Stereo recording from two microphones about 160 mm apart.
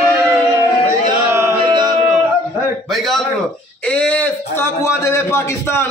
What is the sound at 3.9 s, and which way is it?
A man's voice, 10° left (ahead or behind).